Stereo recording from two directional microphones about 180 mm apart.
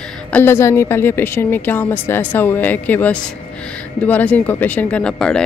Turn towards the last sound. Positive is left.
turn(degrees=5)  # may be behind; listen again after turning